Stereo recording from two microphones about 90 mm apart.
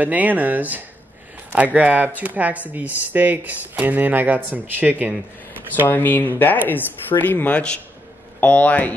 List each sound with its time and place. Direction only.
0.0 s speech: 20° right (ahead or behind)
5.9 s speech: 20° left (ahead or behind)